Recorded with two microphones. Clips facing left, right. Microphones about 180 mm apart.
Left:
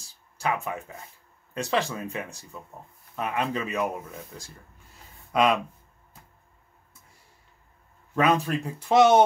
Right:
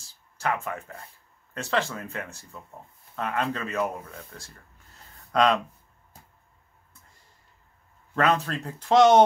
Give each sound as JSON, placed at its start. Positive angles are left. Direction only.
{"t": 0.4, "sound": "speech", "side_deg": 15}
{"t": 8.2, "sound": "speech", "side_deg": 10}